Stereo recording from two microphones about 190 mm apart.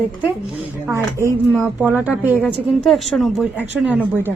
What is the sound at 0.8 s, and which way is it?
A woman's voice, 15° right (ahead or behind).